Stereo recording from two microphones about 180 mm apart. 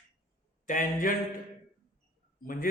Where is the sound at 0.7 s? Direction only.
50° left (ahead or behind).